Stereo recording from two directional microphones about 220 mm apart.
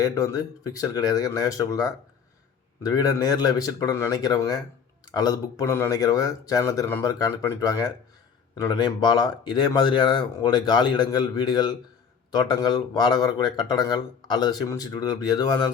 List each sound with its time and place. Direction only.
0.0 s speech: 15° left (ahead or behind)